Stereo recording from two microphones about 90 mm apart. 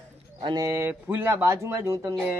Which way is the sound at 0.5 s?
35° right (ahead or behind).